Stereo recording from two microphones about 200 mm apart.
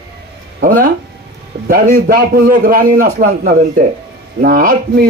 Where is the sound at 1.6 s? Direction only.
50° right (ahead or behind).